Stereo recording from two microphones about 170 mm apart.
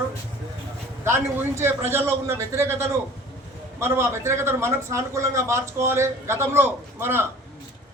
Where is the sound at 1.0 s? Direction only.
15° right (ahead or behind).